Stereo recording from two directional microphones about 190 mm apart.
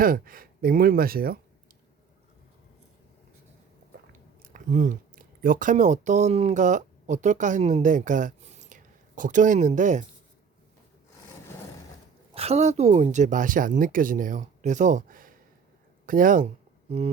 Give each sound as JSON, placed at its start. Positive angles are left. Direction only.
{"t": 0.0, "sound": "speech", "side_deg": -50}
{"t": 4.4, "sound": "speech", "side_deg": -45}
{"t": 12.3, "sound": "speech", "side_deg": -30}